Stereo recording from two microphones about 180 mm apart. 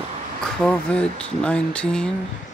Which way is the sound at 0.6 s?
5° left (ahead or behind).